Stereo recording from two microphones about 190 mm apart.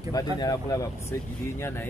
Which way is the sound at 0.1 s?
20° left (ahead or behind).